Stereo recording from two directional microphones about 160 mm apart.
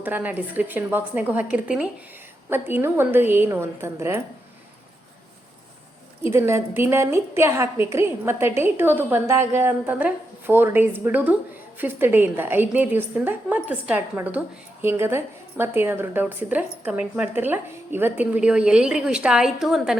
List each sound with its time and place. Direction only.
0.0 s a woman's voice: 10° right (ahead or behind)
6.3 s a woman's voice: 15° right (ahead or behind)